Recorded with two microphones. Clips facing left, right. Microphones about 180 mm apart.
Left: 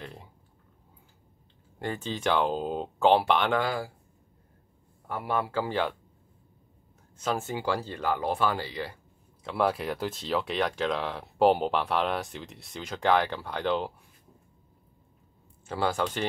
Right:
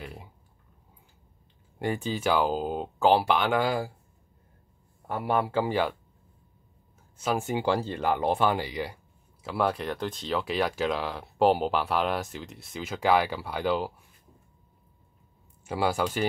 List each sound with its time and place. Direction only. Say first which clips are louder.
0.0 s a sound: right 1 dB; 10° right (ahead or behind)
1.8 s speech: right 3 dB; 10° right (ahead or behind)
5.0 s a man's voice: right 3 dB; 30° right (ahead or behind); by 5.9 s 10° right (ahead or behind)
7.2 s speech: right 2 dB; 10° right (ahead or behind)
9.5 s speech: even; centre (ahead or behind)
15.6 s speech: right 1 dB; 10° right (ahead or behind)